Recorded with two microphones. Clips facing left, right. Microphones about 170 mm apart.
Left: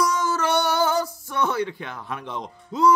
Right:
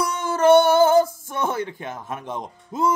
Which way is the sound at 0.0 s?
60° right (ahead or behind).